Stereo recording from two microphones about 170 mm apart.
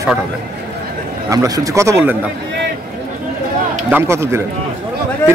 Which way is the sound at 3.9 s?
15° right (ahead or behind).